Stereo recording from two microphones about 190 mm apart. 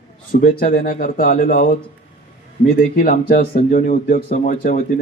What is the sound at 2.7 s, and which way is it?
Speech, 45° left (ahead or behind).